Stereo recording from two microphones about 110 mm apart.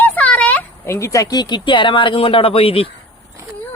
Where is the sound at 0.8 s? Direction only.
25° left (ahead or behind); by 2.9 s 60° left (ahead or behind).